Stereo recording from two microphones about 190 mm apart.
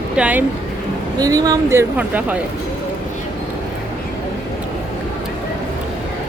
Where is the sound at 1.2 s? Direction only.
20° right (ahead or behind).